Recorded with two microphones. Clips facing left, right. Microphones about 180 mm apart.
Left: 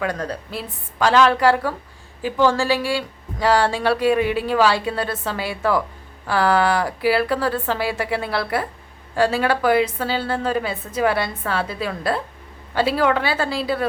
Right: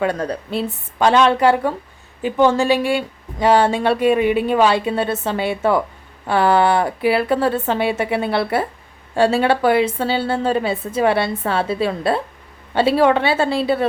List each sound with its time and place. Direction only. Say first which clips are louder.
0.0 s speech: right 4 dB; 25° right (ahead or behind)